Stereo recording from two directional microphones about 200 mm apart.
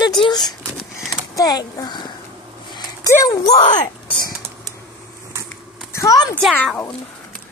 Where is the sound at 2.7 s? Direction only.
20° left (ahead or behind).